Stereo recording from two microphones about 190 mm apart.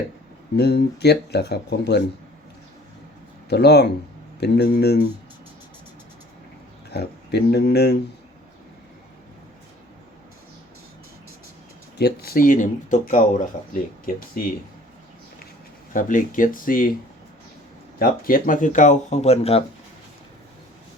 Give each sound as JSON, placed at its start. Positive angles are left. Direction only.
{"t": 0.5, "sound": "speech", "side_deg": 60}
{"t": 3.5, "sound": "speech", "side_deg": 60}
{"t": 6.9, "sound": "speech", "side_deg": 60}
{"t": 11.9, "sound": "speech", "side_deg": 55}
{"t": 14.4, "sound": "speech", "side_deg": 45}
{"t": 15.9, "sound": "speech", "side_deg": 45}
{"t": 18.0, "sound": "speech", "side_deg": 50}